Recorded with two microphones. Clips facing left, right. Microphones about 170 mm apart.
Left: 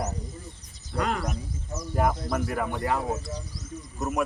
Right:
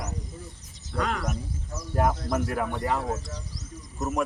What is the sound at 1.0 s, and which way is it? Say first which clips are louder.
Speech: left 1 dB; 5° left (ahead or behind).